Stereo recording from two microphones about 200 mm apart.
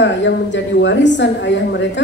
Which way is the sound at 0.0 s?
65° left (ahead or behind).